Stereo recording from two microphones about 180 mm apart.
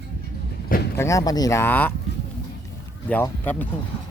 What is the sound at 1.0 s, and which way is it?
Speech, 15° left (ahead or behind).